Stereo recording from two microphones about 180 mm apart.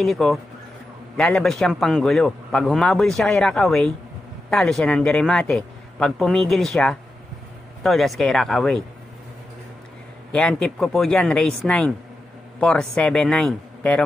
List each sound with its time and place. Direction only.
0.0 s a man's voice: centre (ahead or behind)
10.3 s a man's voice: 5° left (ahead or behind)